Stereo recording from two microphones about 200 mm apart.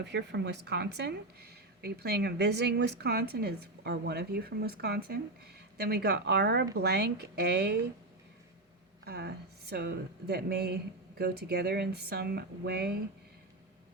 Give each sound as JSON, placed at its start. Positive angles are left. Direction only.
{"t": 0.0, "sound": "speech", "side_deg": -60}
{"t": 9.0, "sound": "speech", "side_deg": -55}